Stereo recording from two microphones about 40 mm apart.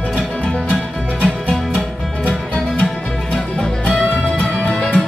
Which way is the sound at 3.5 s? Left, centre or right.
Left.